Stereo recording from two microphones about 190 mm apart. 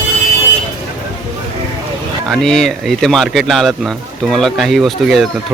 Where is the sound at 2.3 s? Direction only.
Centre (ahead or behind).